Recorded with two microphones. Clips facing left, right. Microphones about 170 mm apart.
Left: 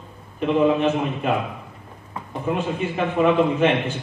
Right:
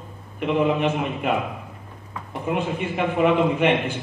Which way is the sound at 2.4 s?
15° right (ahead or behind).